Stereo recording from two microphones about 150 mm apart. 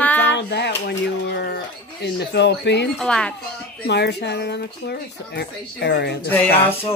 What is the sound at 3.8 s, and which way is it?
Speech, 90° left.